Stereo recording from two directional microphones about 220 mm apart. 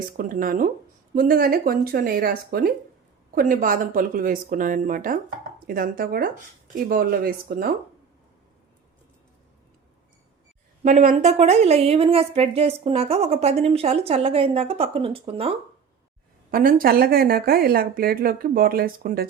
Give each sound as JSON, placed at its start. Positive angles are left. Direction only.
{"t": 0.2, "sound": "speech", "side_deg": -40}
{"t": 10.8, "sound": "a woman's voice", "side_deg": -30}
{"t": 16.5, "sound": "speech", "side_deg": -40}